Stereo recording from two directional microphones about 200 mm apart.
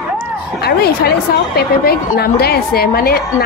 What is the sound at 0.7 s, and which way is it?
A woman's voice, 50° left (ahead or behind).